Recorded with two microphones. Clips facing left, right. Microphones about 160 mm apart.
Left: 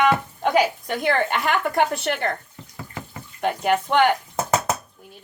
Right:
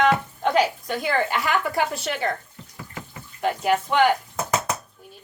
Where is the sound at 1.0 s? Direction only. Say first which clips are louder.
Left 2 dB; 60° left (ahead or behind).